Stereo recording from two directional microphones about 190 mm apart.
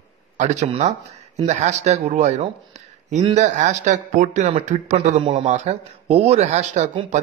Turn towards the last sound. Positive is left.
turn(degrees=-40)  # may be behind; listen again after turning